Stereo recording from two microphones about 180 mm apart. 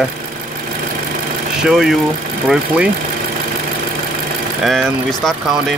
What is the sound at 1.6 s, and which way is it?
Speech, 5° right (ahead or behind).